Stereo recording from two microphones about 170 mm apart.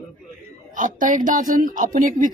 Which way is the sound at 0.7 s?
50° right (ahead or behind).